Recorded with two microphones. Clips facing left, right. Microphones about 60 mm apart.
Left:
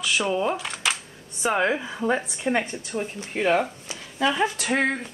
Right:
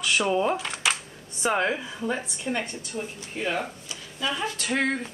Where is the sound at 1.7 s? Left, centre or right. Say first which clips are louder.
Left 5 dB; left.